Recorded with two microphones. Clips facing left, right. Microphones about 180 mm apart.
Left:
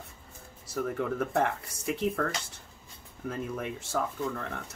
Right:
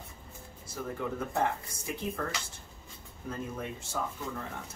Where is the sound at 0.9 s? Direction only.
70° left (ahead or behind).